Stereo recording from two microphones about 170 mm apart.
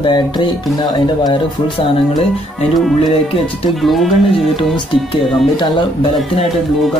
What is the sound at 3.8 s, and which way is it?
Speech, centre (ahead or behind).